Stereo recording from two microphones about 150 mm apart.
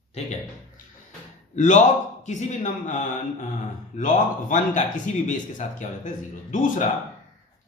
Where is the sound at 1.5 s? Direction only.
55° left (ahead or behind).